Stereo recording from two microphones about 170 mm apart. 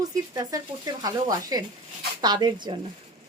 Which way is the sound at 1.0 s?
20° right (ahead or behind).